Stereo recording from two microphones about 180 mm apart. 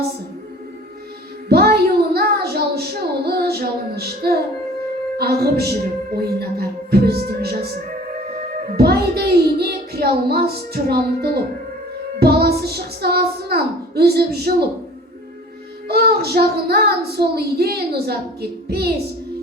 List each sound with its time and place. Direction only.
1.5 s child singing: 60° right (ahead or behind)
5.1 s a woman's voice: 60° right (ahead or behind)
8.7 s a child's voice: 60° right (ahead or behind)
15.9 s a child's voice: 60° right (ahead or behind)